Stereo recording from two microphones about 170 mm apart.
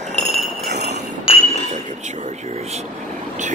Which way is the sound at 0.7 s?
40° right (ahead or behind).